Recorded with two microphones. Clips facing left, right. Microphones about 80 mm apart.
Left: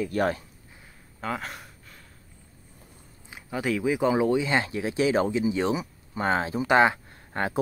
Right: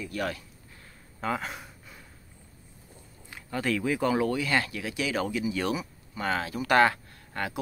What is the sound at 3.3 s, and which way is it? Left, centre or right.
Speech, centre.